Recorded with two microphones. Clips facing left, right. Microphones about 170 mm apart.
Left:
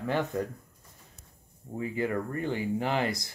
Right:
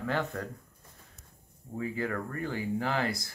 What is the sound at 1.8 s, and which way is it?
Speech, 20° left (ahead or behind).